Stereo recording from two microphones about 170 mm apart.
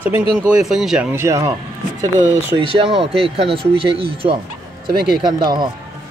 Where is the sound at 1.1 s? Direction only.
15° right (ahead or behind).